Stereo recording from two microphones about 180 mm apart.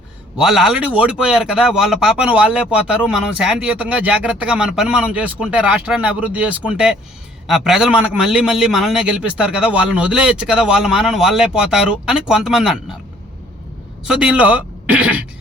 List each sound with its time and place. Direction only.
0.3 s a man's voice: 5° right (ahead or behind)
14.0 s speech: 5° right (ahead or behind)